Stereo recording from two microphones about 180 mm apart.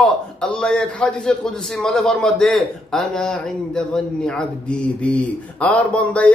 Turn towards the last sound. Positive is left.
turn(degrees=5)  # may be behind; listen again after turning